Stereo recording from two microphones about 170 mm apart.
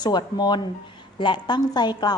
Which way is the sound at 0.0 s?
25° left (ahead or behind).